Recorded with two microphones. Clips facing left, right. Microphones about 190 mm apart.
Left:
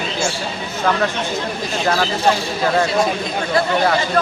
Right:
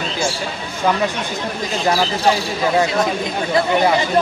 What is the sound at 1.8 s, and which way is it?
Speech, 15° right (ahead or behind).